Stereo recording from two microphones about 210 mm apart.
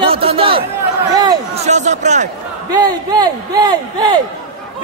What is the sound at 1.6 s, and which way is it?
Speech, 35° right (ahead or behind).